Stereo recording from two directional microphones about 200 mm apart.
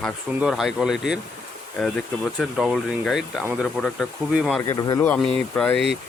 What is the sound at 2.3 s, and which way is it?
Speech, centre (ahead or behind).